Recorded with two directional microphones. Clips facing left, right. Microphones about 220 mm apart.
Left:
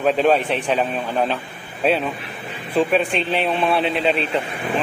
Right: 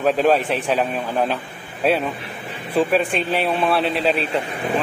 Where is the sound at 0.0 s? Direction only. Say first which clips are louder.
Even; centre (ahead or behind).